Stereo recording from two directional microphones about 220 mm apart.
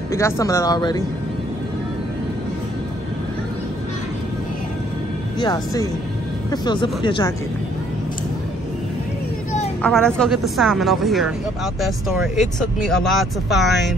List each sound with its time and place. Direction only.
0.1 s speech: 15° left (ahead or behind)
5.4 s speech: 15° left (ahead or behind)
9.8 s speech: 5° left (ahead or behind)